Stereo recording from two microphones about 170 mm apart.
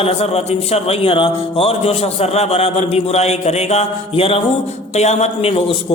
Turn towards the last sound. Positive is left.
turn(degrees=35)  # may be behind; listen again after turning